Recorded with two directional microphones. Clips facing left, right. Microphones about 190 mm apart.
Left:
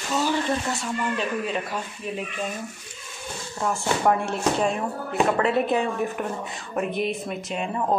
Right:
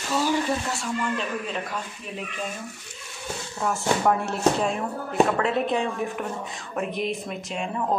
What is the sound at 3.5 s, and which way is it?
Speech, centre (ahead or behind).